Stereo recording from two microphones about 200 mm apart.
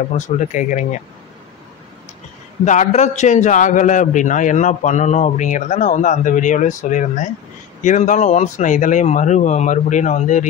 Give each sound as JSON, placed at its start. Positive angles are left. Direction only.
{"t": 0.1, "sound": "a man's voice", "side_deg": 40}
{"t": 2.6, "sound": "a man's voice", "side_deg": 35}